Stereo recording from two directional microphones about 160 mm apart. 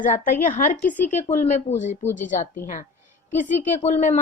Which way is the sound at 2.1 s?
50° left (ahead or behind).